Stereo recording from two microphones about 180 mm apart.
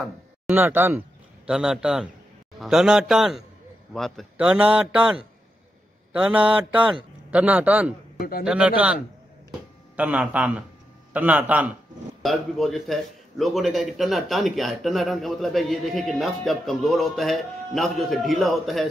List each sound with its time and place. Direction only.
0.5 s a man's voice: 10° right (ahead or behind)
6.8 s a man's voice: 25° right (ahead or behind)
7.2 s a man's voice: 10° right (ahead or behind)
8.2 s a man's voice: 55° left (ahead or behind)
8.5 s a man's voice: 5° right (ahead or behind)